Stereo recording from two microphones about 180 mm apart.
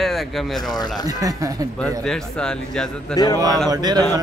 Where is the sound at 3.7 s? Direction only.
20° right (ahead or behind).